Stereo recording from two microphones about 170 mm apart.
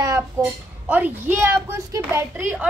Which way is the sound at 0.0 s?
15° right (ahead or behind).